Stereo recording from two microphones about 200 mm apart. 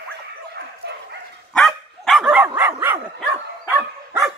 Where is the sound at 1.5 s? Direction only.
Centre (ahead or behind).